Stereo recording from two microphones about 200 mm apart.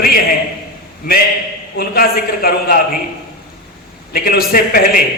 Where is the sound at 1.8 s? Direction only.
50° left (ahead or behind).